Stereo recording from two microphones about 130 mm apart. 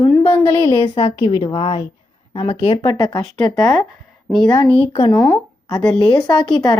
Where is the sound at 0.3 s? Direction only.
15° left (ahead or behind).